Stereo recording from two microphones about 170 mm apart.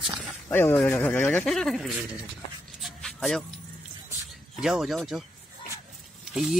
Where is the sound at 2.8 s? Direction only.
Centre (ahead or behind).